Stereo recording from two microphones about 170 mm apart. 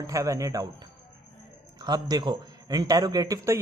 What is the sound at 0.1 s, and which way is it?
A man's voice, 20° right (ahead or behind).